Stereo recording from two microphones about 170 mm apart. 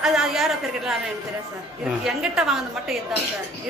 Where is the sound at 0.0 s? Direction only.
Centre (ahead or behind).